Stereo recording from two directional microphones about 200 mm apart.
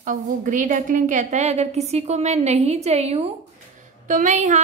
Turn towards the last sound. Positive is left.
turn(degrees=-40)  # may be behind; listen again after turning